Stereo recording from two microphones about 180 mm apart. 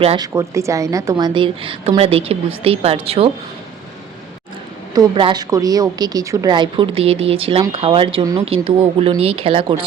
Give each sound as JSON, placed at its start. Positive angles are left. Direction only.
{"t": 0.2, "sound": "a woman's voice", "side_deg": -15}
{"t": 4.9, "sound": "a woman's voice", "side_deg": -25}